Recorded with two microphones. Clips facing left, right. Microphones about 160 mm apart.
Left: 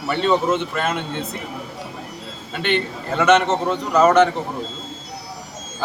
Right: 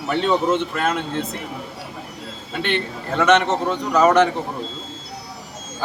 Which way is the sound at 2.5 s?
Centre (ahead or behind).